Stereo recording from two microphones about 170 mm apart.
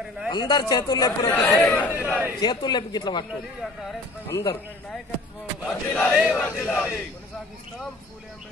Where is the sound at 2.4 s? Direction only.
25° left (ahead or behind).